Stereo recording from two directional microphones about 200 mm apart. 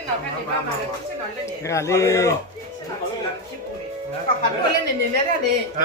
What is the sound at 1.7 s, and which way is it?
Speech, 15° left (ahead or behind).